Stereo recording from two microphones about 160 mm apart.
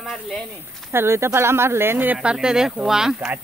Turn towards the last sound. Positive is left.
turn(degrees=-5)  # may be behind; listen again after turning